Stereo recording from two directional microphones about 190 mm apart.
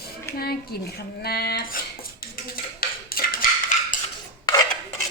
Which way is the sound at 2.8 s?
50° left (ahead or behind).